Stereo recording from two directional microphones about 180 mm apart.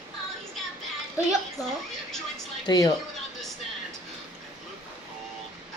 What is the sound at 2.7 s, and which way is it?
Speech, 25° left (ahead or behind).